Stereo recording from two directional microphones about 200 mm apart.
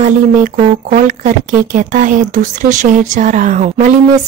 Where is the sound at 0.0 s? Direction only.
40° right (ahead or behind).